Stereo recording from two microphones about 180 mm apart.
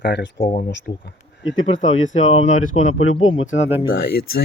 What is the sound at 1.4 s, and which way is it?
Speech, 90° left.